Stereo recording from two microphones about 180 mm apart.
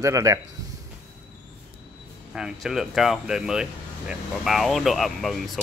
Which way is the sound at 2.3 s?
5° right (ahead or behind).